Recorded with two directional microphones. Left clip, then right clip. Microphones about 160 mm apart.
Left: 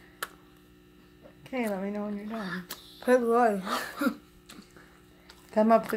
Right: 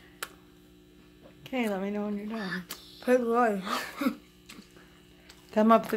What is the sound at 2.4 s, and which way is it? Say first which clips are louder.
Speech: right 1 dB; 10° left (ahead or behind).